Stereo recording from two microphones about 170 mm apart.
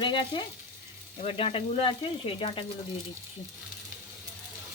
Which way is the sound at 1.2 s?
35° left (ahead or behind).